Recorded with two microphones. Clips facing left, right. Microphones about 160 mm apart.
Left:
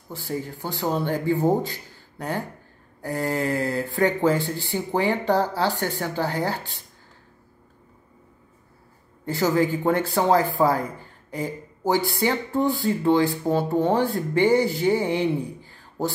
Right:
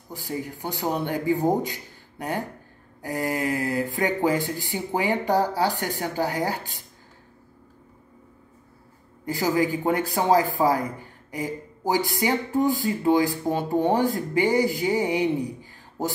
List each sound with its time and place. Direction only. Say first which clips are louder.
0.1 s speech: left 1 dB; 15° right (ahead or behind)
9.2 s speech: left 2 dB; 15° right (ahead or behind)